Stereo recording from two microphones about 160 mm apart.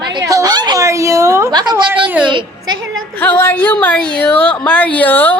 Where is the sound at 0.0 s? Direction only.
25° right (ahead or behind).